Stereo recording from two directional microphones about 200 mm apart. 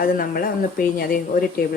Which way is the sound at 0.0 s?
45° left (ahead or behind).